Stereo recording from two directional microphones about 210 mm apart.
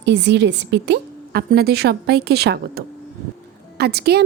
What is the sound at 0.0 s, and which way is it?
A woman's voice, 55° right (ahead or behind).